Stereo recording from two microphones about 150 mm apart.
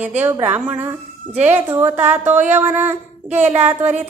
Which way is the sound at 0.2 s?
10° right (ahead or behind).